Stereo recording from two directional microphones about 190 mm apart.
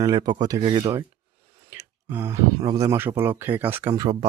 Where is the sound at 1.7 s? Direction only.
10° right (ahead or behind).